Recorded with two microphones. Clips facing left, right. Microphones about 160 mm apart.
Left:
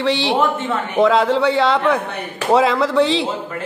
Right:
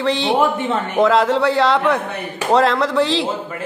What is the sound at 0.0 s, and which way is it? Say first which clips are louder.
Speech: right 1 dB; centre (ahead or behind).